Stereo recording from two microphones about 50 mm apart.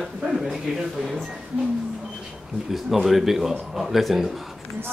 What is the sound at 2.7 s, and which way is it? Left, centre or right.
Speech, centre.